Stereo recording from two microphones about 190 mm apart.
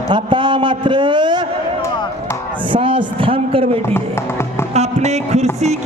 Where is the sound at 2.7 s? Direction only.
25° right (ahead or behind).